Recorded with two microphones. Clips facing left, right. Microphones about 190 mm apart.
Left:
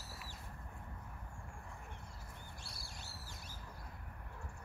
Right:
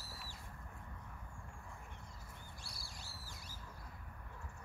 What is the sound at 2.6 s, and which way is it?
Bird, 25° left (ahead or behind).